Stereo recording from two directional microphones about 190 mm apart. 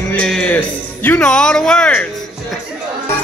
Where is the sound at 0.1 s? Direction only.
5° left (ahead or behind).